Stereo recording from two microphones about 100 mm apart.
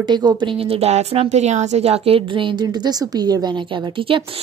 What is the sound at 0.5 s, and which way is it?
A woman's voice, 75° right (ahead or behind).